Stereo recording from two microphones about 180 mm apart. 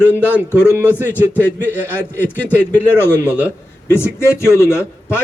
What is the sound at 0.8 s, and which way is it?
A man's voice, 10° right (ahead or behind).